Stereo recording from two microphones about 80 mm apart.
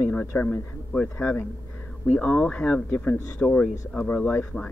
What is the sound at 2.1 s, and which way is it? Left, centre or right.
Speech, centre.